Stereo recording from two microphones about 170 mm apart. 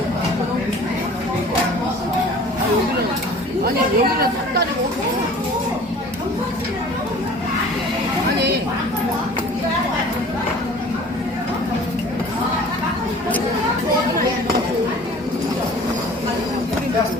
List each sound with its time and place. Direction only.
3.6 s speech: 60° right (ahead or behind)